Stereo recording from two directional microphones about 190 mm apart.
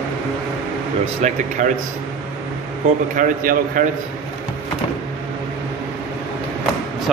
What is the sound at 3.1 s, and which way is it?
Speech, 45° right (ahead or behind).